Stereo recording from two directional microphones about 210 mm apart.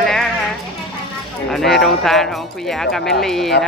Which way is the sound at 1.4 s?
Centre (ahead or behind).